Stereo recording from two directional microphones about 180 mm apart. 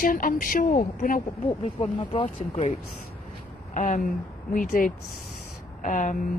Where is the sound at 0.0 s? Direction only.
50° left (ahead or behind).